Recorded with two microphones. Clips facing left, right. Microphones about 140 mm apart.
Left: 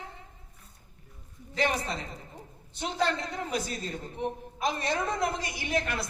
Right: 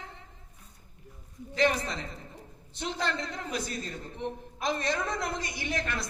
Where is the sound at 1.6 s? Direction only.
10° left (ahead or behind).